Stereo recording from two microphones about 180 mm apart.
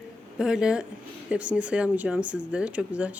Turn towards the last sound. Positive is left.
turn(degrees=-5)  # may be behind; listen again after turning